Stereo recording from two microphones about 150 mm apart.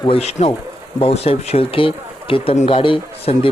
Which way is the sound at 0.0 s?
40° left (ahead or behind).